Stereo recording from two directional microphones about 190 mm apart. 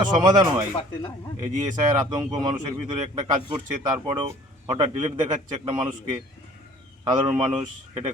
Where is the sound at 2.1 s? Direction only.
20° right (ahead or behind).